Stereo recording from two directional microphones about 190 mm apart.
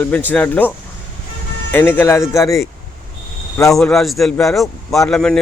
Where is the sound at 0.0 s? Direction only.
10° left (ahead or behind).